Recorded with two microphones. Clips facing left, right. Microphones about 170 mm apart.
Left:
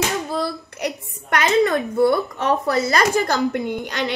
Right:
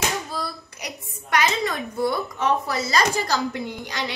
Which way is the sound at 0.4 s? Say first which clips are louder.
Left 8 dB; 60° left (ahead or behind).